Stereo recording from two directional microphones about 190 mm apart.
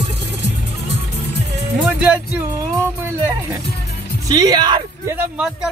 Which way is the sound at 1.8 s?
5° right (ahead or behind).